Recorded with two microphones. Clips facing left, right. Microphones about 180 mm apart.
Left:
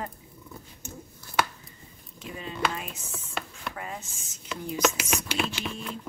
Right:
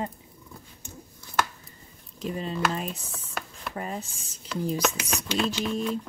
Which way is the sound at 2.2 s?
35° right (ahead or behind).